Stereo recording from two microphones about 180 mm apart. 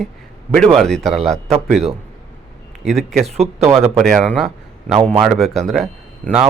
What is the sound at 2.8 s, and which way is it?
Speech, centre (ahead or behind).